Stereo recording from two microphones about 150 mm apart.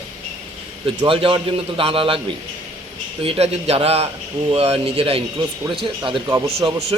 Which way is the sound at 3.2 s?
40° right (ahead or behind).